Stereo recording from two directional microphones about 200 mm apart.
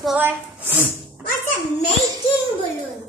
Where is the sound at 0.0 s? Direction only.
5° right (ahead or behind).